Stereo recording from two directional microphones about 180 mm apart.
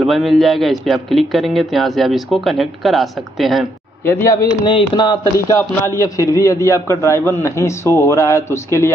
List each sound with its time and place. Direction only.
0.0 s a man's voice: centre (ahead or behind)
4.0 s a man's voice: 15° left (ahead or behind)
4.5 s a man's voice: 25° left (ahead or behind)